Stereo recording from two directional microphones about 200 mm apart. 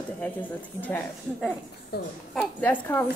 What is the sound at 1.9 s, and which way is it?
Speech, 50° left (ahead or behind).